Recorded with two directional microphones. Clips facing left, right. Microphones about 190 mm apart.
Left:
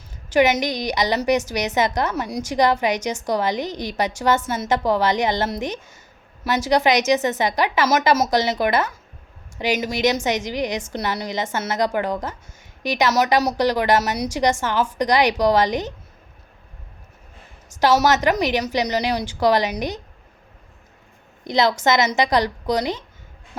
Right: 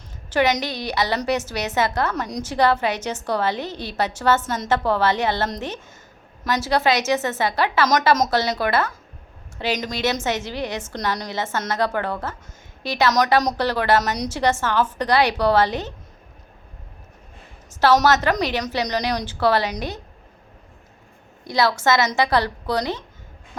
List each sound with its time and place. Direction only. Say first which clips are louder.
0.3 s a woman's voice: left 3 dB; 10° left (ahead or behind)
17.7 s a woman's voice: even; 15° left (ahead or behind)
21.4 s a woman's voice: left 1 dB; 20° left (ahead or behind)